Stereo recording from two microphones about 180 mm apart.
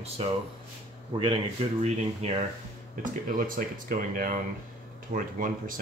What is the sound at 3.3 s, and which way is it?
Speech, 50° right (ahead or behind).